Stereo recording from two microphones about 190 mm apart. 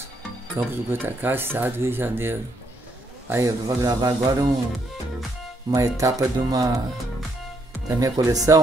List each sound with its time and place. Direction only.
0.6 s speech: 10° right (ahead or behind)
5.7 s speech: 15° right (ahead or behind)
8.0 s speech: 20° right (ahead or behind)